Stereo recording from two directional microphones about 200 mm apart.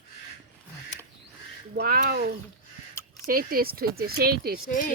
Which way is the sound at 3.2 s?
45° right (ahead or behind).